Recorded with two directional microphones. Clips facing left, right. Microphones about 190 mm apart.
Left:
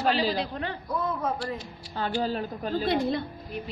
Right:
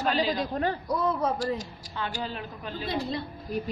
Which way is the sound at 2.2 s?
40° left (ahead or behind).